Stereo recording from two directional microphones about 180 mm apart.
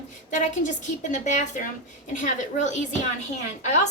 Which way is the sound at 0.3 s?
45° left (ahead or behind).